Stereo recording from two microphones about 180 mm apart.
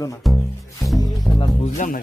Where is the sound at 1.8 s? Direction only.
45° left (ahead or behind).